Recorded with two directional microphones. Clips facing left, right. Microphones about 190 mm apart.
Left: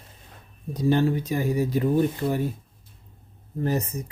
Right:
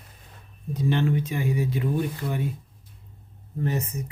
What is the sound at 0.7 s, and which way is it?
Speech, 35° left (ahead or behind).